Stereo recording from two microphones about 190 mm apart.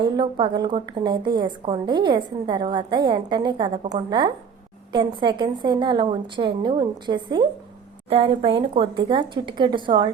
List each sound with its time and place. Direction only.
0.0 s a woman's voice: 25° right (ahead or behind)